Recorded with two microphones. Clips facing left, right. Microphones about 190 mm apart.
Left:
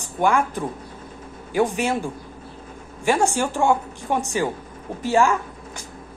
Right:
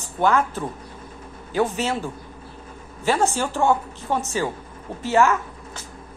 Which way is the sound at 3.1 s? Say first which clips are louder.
Left 1 dB; 15° left (ahead or behind).